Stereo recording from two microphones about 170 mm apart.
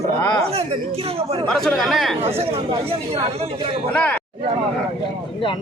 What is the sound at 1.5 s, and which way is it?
Speech, 5° left (ahead or behind).